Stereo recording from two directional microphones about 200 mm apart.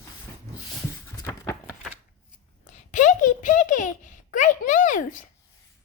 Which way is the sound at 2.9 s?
40° left (ahead or behind).